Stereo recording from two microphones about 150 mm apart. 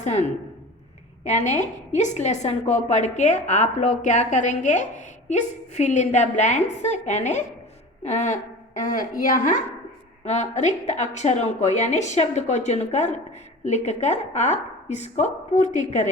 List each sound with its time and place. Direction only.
0.0 s a woman's voice: 50° left (ahead or behind)